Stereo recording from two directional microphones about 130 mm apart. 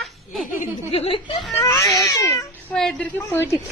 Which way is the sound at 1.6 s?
25° left (ahead or behind).